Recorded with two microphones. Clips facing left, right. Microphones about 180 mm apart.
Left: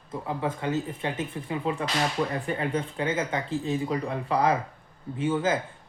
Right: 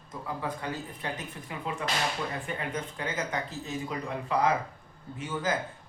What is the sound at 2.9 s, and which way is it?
Speech, 25° left (ahead or behind).